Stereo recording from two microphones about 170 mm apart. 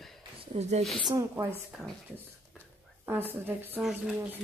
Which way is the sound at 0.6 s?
40° right (ahead or behind).